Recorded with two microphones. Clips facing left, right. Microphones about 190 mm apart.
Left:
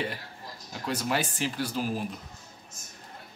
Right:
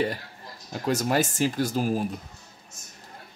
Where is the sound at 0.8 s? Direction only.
45° right (ahead or behind).